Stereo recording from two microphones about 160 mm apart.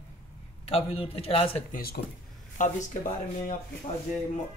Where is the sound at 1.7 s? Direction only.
70° left (ahead or behind).